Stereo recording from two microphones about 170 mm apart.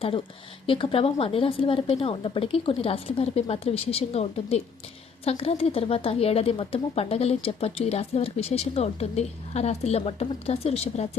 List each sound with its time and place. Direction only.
0.7 s speech: 30° left (ahead or behind)